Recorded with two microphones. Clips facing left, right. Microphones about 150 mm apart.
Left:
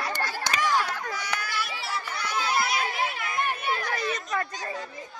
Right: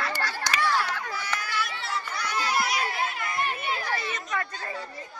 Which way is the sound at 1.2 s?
10° left (ahead or behind).